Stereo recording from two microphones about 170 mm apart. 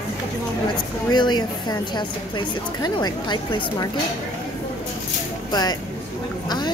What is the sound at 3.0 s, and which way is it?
Speech, 25° left (ahead or behind).